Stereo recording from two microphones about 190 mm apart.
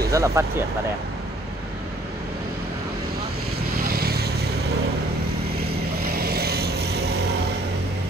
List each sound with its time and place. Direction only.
0.1 s speech: 15° right (ahead or behind)
3.8 s vehicle: 55° right (ahead or behind)
6.0 s vehicle: 55° right (ahead or behind)